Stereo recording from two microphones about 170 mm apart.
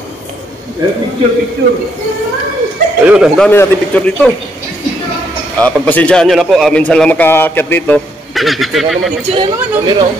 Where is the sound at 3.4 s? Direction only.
10° left (ahead or behind).